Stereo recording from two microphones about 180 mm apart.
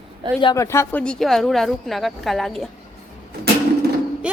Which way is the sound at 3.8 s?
65° right (ahead or behind).